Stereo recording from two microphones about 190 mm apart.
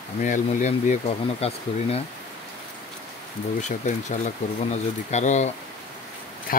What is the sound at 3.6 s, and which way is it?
Speech, 40° left (ahead or behind).